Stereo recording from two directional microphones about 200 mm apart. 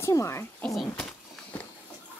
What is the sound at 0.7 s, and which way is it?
Speech, centre (ahead or behind).